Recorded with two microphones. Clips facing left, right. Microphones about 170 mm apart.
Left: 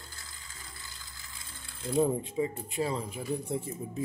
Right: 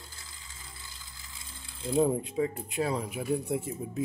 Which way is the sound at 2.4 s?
Centre (ahead or behind).